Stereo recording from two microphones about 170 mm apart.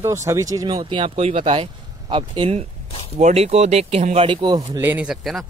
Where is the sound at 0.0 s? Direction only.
15° right (ahead or behind); by 5.5 s centre (ahead or behind).